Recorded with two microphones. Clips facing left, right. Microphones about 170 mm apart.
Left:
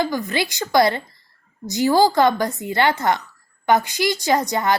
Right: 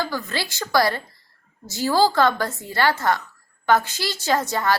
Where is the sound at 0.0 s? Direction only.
15° left (ahead or behind).